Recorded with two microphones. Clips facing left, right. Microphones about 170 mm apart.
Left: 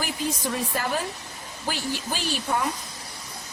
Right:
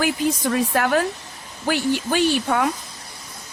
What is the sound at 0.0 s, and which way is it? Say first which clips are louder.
A woman's voice: right 7 dB; 75° right (ahead or behind).